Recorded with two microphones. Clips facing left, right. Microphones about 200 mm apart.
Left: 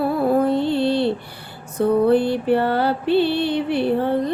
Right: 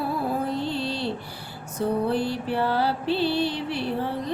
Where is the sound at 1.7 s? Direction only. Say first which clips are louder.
Left 8 dB; 60° left (ahead or behind).